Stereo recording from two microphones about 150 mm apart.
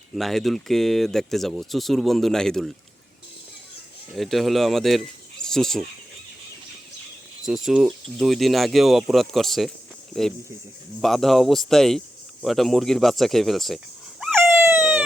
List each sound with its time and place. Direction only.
0.1 s speech: centre (ahead or behind)
4.1 s speech: centre (ahead or behind)
7.4 s speech: centre (ahead or behind)
14.4 s dog: 15° right (ahead or behind)